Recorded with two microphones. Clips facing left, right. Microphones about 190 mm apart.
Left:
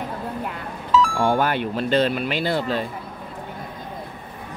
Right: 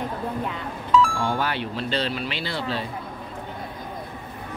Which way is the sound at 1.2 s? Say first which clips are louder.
Left 5 dB; 50° left (ahead or behind).